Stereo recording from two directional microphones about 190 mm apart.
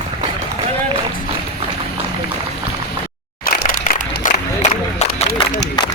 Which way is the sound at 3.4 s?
45° left (ahead or behind).